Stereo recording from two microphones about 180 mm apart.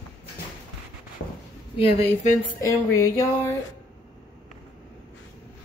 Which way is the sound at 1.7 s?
35° left (ahead or behind).